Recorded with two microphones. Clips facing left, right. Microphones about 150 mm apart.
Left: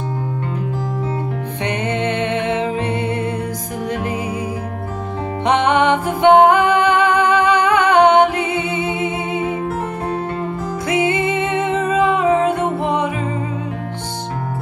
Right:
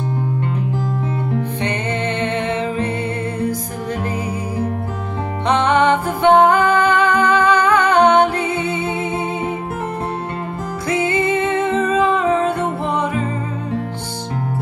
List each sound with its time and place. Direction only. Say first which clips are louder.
1.6 s music: left 1 dB; 15° left (ahead or behind)
5.7 s music: even; 15° left (ahead or behind)
10.9 s music: even; 20° left (ahead or behind)